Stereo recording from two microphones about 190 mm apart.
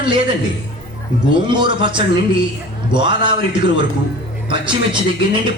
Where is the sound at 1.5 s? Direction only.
25° right (ahead or behind).